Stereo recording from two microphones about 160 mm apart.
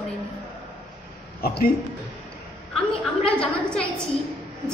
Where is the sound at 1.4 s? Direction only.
70° left (ahead or behind).